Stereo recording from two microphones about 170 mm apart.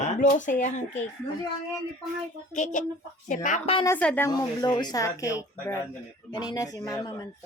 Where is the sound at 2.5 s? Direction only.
45° left (ahead or behind).